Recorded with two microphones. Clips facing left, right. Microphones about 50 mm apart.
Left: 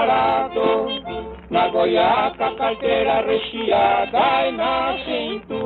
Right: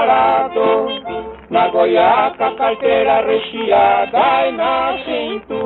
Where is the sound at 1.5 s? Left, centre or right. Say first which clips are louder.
Right 5 dB; centre.